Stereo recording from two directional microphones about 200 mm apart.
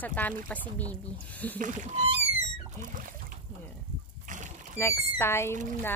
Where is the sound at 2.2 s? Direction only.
35° right (ahead or behind).